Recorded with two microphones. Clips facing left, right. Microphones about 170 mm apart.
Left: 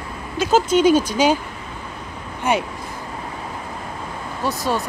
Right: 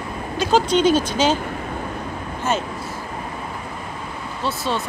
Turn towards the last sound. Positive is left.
turn(degrees=10)  # may be behind; listen again after turning